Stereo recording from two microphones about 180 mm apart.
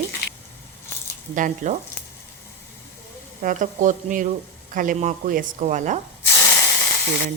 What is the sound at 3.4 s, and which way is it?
Stir, 45° right (ahead or behind).